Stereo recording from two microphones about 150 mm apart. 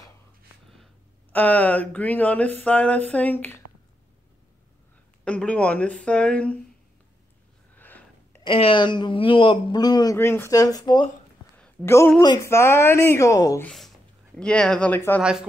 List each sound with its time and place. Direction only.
1.3 s speech: 10° left (ahead or behind)
5.2 s speech: 10° left (ahead or behind)
7.7 s a sound: 10° left (ahead or behind)
8.5 s a man's voice: 35° left (ahead or behind)
10.1 s speech: 15° left (ahead or behind)
11.6 s a sound: 15° left (ahead or behind)
12.4 s speech: 20° left (ahead or behind)
13.7 s speech: centre (ahead or behind)